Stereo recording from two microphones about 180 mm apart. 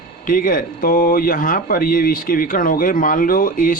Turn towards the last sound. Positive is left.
turn(degrees=50)  # may be behind; listen again after turning